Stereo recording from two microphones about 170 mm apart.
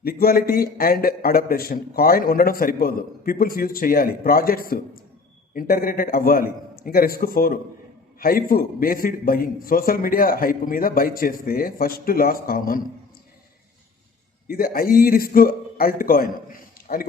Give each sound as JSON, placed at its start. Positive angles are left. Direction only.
{"t": 0.0, "sound": "a man's voice", "side_deg": 60}
{"t": 14.4, "sound": "a man's voice", "side_deg": 60}